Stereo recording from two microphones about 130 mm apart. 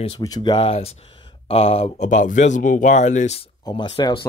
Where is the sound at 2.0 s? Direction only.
75° left (ahead or behind).